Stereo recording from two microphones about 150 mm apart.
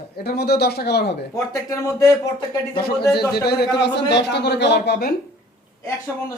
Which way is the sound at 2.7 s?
90° left.